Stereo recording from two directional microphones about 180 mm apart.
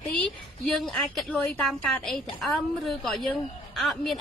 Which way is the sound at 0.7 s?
Centre (ahead or behind).